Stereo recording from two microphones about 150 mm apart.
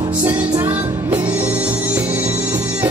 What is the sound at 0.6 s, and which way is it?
Music, 10° right (ahead or behind).